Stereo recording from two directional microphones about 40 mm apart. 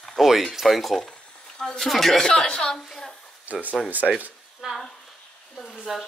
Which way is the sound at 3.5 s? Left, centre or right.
Right.